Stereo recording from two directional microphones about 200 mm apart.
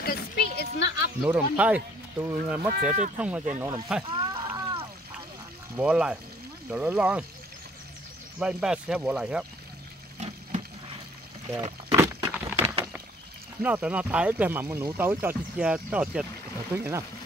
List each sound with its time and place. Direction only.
0.0 s a sound: 50° left (ahead or behind)
1.2 s speech: 5° right (ahead or behind)
2.7 s speech: 40° right (ahead or behind)
3.2 s speech: 5° right (ahead or behind)
4.0 s a sound: 25° right (ahead or behind)
5.8 s speech: 5° right (ahead or behind)
8.4 s speech: 5° right (ahead or behind)
11.5 s a sound: 15° right (ahead or behind)
13.6 s speech: 5° right (ahead or behind)